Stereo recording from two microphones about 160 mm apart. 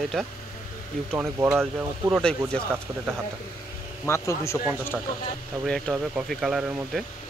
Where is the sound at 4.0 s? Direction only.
15° left (ahead or behind).